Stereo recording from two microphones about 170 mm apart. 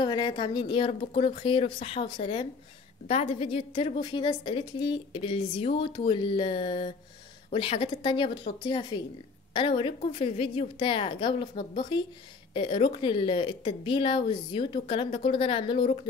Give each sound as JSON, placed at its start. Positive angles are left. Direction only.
{"t": 0.0, "sound": "a woman's voice", "side_deg": 25}